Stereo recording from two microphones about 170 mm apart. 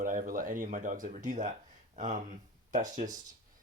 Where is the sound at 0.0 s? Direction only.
55° right (ahead or behind).